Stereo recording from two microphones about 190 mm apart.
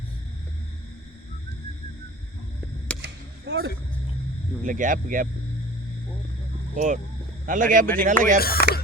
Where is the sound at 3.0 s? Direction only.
60° right (ahead or behind).